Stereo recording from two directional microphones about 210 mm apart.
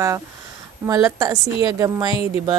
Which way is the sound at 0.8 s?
15° right (ahead or behind).